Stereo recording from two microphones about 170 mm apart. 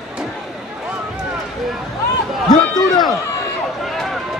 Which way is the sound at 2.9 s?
25° left (ahead or behind).